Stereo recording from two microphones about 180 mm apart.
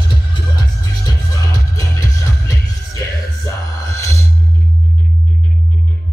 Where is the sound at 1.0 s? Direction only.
20° left (ahead or behind).